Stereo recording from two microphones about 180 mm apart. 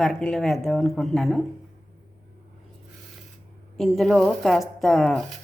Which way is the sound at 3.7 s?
Centre (ahead or behind).